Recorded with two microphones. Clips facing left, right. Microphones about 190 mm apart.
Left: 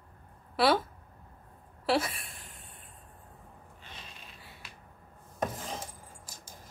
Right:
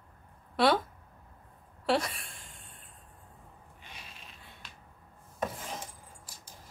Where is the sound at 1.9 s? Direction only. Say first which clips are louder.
Even; 5° left (ahead or behind).